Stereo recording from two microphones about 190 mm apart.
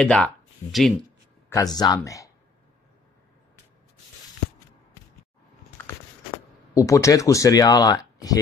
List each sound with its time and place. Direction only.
0.0 s speech: 5° left (ahead or behind)
1.5 s speech: 20° left (ahead or behind)
6.7 s speech: 15° left (ahead or behind)